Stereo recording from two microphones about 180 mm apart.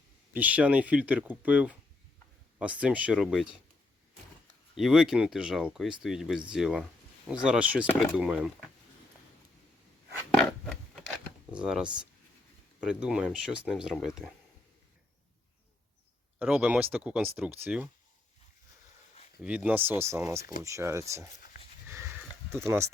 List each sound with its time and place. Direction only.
0.3 s speech: 10° right (ahead or behind)
4.8 s speech: centre (ahead or behind)
10.3 s a sound: 5° left (ahead or behind)
11.5 s speech: 5° right (ahead or behind)
16.4 s speech: 5° right (ahead or behind)
19.4 s speech: 5° right (ahead or behind)
21.3 s dog: 50° left (ahead or behind)
21.8 s horse: 15° right (ahead or behind)
22.5 s speech: 15° right (ahead or behind)